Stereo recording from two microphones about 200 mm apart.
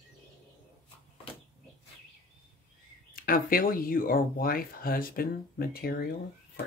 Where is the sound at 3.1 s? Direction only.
45° left (ahead or behind).